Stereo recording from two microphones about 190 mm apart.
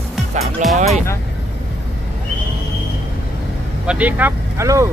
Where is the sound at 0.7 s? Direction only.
35° right (ahead or behind).